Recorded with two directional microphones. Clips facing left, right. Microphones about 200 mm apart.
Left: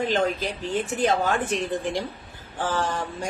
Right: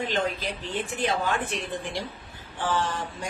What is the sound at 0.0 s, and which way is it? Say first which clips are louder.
A woman's voice: left 4 dB; 45° left (ahead or behind).